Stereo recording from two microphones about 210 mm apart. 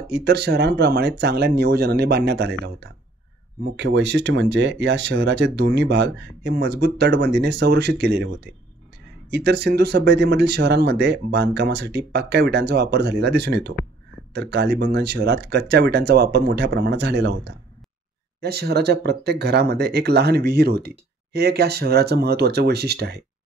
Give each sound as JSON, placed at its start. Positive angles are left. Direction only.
{"t": 0.1, "sound": "speech", "side_deg": -50}
{"t": 9.3, "sound": "speech", "side_deg": -50}